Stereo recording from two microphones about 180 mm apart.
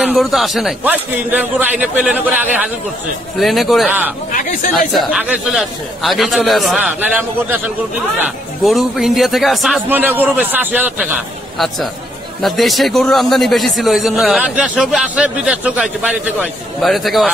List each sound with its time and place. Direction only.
0.0 s a man's voice: centre (ahead or behind)
4.3 s speech: 50° left (ahead or behind)
4.7 s a man's voice: 5° right (ahead or behind)
11.5 s a man's voice: centre (ahead or behind)